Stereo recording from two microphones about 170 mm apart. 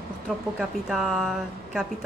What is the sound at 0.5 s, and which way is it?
A woman's voice, centre (ahead or behind).